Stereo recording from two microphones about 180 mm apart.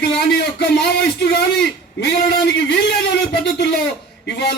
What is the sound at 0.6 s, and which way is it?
Speech, 70° left (ahead or behind).